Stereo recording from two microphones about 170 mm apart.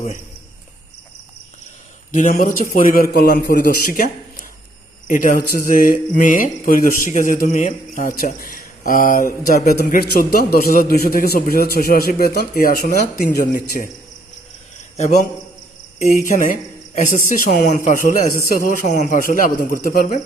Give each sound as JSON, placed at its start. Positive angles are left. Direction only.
{"t": 2.1, "sound": "a man's voice", "side_deg": 55}
{"t": 14.9, "sound": "speech", "side_deg": 40}